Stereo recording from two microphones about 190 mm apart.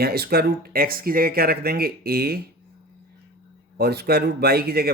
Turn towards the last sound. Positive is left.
turn(degrees=-55)  # may be behind; listen again after turning